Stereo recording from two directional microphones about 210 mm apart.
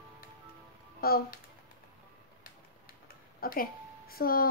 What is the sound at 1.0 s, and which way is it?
Speech, 45° left (ahead or behind).